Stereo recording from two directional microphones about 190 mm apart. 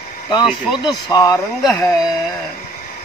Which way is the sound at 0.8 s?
20° left (ahead or behind).